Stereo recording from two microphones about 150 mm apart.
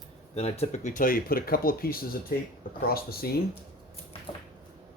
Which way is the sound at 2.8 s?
90° left.